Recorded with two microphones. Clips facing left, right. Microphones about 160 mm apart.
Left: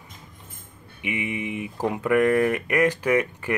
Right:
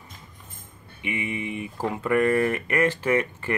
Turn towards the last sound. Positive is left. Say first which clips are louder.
# left 1 dB
turn(degrees=15)  # may be behind; listen again after turning